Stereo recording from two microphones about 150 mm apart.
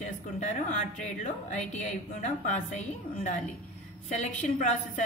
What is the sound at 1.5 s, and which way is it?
A woman's voice, 50° left (ahead or behind).